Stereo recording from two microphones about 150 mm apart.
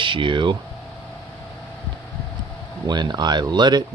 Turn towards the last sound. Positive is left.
turn(degrees=-30)  # may be behind; listen again after turning